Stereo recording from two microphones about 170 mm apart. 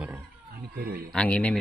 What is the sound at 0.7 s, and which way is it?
Speech, 65° right (ahead or behind).